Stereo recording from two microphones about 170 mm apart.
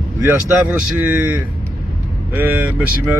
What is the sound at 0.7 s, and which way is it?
Speech, 10° right (ahead or behind).